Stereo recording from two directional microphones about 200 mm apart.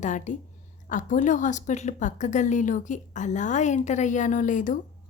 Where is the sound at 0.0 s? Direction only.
40° left (ahead or behind).